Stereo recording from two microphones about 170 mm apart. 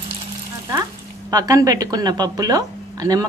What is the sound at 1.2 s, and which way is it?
A woman's voice, 20° right (ahead or behind).